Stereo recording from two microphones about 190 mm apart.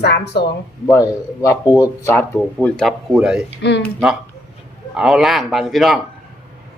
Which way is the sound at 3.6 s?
65° left (ahead or behind).